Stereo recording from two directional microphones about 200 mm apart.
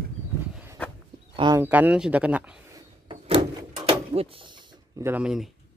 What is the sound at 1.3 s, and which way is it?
Speech, 25° right (ahead or behind).